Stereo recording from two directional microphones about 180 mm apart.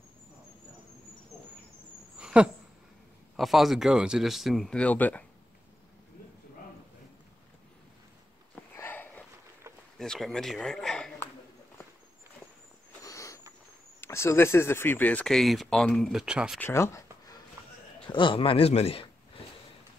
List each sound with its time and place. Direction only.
2.1 s a sound: 5° right (ahead or behind)
3.3 s speech: centre (ahead or behind)
8.7 s sniff: 10° left (ahead or behind)
9.9 s speech: 5° left (ahead or behind)
13.0 s a sound: 20° left (ahead or behind)
14.0 s speech: 15° left (ahead or behind); by 16.5 s 5° right (ahead or behind)
16.5 s speech: 15° left (ahead or behind)
18.0 s a man's voice: 25° left (ahead or behind)